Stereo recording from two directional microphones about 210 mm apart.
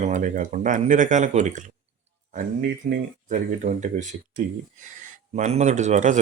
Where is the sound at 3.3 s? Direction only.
35° right (ahead or behind).